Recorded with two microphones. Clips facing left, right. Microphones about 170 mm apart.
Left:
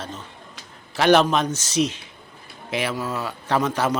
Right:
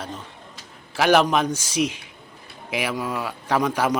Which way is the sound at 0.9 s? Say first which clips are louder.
Left 1 dB; 5° right (ahead or behind).